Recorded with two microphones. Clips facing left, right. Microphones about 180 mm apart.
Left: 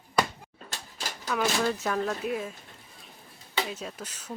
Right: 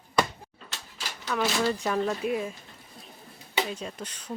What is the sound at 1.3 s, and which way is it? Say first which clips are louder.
Speech: right 1 dB; centre (ahead or behind).